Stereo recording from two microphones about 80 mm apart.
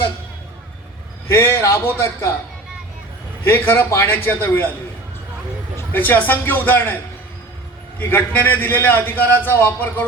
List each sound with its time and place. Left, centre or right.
1.3 s speech: left
3.4 s a man's voice: left
5.7 s a man's voice: left